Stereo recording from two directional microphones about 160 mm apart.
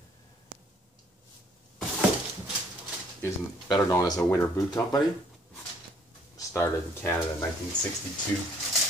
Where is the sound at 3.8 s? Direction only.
20° left (ahead or behind).